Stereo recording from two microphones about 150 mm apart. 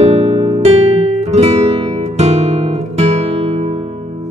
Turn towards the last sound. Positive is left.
turn(degrees=-50)  # may be behind; listen again after turning